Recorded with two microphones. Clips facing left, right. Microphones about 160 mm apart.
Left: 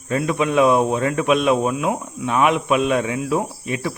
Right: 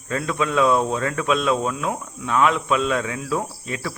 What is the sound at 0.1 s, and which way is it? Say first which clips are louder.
Speech: left 4 dB; 20° left (ahead or behind).